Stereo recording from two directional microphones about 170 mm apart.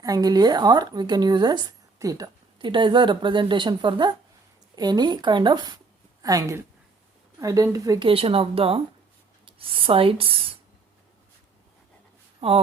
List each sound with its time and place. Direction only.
0.0 s speech: 20° right (ahead or behind)
8.0 s speech: 35° right (ahead or behind)
12.4 s speech: 35° right (ahead or behind)